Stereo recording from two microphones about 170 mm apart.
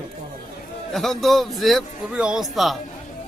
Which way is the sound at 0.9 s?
Centre (ahead or behind).